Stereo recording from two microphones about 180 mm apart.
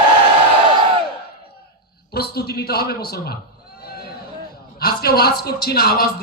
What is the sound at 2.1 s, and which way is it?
A man's voice, 60° left (ahead or behind).